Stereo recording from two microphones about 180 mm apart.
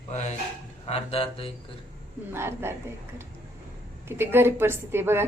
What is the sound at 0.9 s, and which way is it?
Speech, 35° left (ahead or behind).